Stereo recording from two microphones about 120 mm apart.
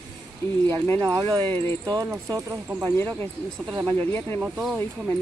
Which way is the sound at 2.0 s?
25° right (ahead or behind).